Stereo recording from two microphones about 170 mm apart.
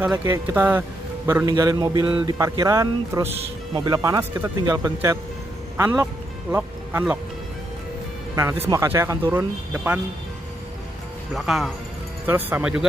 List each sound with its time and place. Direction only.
0.0 s a man's voice: 10° right (ahead or behind)
8.4 s a man's voice: 15° right (ahead or behind)
11.3 s a man's voice: centre (ahead or behind)